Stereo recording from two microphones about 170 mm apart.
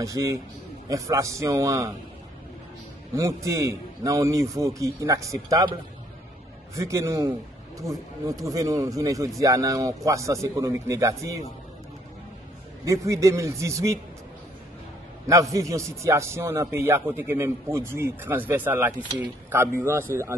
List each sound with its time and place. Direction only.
0.0 s a man's voice: 20° right (ahead or behind)
3.2 s a man's voice: 20° right (ahead or behind)
12.8 s a man's voice: 20° right (ahead or behind)
15.5 s a man's voice: 20° right (ahead or behind)